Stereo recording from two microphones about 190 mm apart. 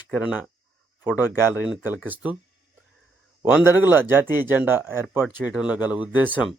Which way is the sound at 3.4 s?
10° right (ahead or behind).